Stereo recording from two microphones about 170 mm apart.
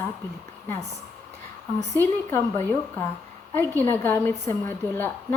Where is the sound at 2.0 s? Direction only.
15° left (ahead or behind).